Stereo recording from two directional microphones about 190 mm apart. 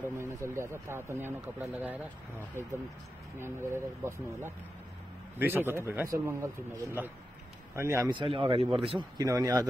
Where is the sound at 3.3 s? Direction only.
10° right (ahead or behind).